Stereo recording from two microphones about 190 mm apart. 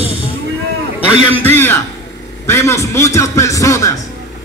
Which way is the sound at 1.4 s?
10° left (ahead or behind).